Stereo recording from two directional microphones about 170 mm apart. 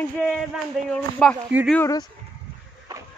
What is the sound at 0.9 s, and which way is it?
Speech, 5° left (ahead or behind).